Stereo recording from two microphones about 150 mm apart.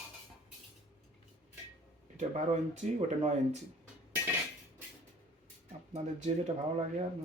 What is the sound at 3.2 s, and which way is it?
Speech, 50° right (ahead or behind).